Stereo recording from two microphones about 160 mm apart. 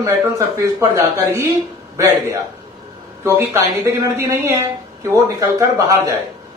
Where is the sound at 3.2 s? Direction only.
15° right (ahead or behind).